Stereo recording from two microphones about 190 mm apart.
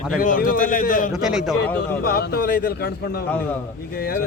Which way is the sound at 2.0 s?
55° left (ahead or behind).